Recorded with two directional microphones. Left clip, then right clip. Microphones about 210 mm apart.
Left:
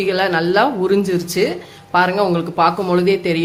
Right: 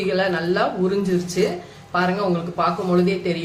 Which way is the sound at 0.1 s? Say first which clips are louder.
Left 5 dB; 45° left (ahead or behind).